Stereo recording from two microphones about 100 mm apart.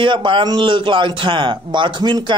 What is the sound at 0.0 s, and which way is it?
Speech, 55° right (ahead or behind).